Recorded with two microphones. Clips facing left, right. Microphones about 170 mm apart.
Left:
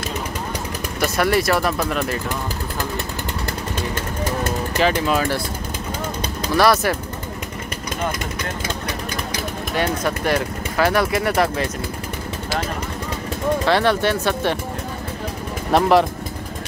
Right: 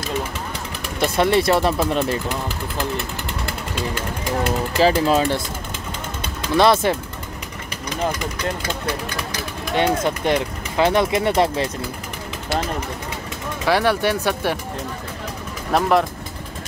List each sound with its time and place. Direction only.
1.0 s speech: 25° right (ahead or behind)
4.7 s speech: 30° right (ahead or behind)
6.5 s speech: 25° right (ahead or behind)
10.0 s speech: 20° right (ahead or behind)
13.7 s speech: 10° right (ahead or behind)
15.7 s speech: centre (ahead or behind)